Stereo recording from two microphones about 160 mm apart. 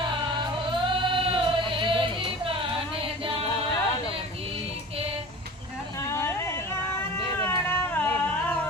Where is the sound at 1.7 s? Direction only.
30° right (ahead or behind).